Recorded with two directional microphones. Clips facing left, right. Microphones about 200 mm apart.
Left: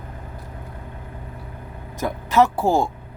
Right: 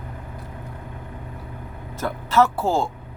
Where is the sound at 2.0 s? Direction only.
15° left (ahead or behind).